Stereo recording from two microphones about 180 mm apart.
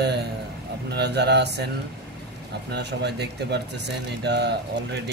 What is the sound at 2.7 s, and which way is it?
Speech, 70° right (ahead or behind).